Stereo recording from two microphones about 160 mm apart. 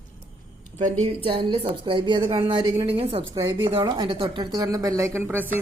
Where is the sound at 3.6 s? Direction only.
30° right (ahead or behind).